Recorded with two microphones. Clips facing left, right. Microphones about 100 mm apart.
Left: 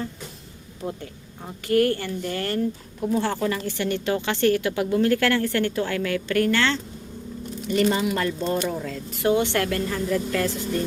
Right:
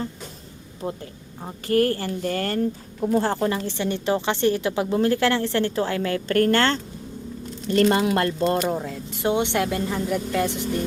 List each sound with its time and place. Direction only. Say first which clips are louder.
0.8 s a woman's voice: right 1 dB; 25° right (ahead or behind)
3.5 s a woman's voice: even; 25° right (ahead or behind); by 6.7 s 45° right (ahead or behind)
7.8 s speech: right 3 dB; 65° right (ahead or behind)
8.8 s a woman's voice: left 1 dB; 20° right (ahead or behind)